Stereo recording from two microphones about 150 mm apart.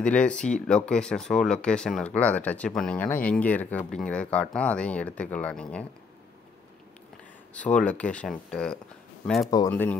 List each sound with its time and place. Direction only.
0.0 s speech: 5° left (ahead or behind)
7.5 s speech: 10° left (ahead or behind)